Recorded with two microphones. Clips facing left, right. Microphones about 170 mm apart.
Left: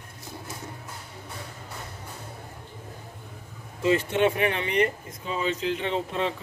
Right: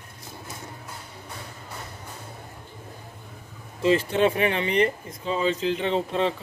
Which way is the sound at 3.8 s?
30° right (ahead or behind).